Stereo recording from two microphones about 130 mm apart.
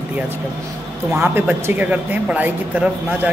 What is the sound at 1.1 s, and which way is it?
Speech, 15° right (ahead or behind).